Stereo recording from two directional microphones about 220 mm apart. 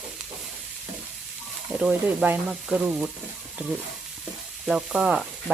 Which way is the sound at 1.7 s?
5° right (ahead or behind).